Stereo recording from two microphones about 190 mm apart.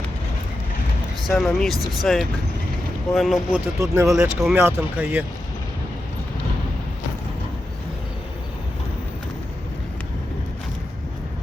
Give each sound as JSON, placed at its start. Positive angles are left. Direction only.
{"t": 1.3, "sound": "speech", "side_deg": 0}
{"t": 3.8, "sound": "speech", "side_deg": -15}
{"t": 4.1, "sound": "speech", "side_deg": 0}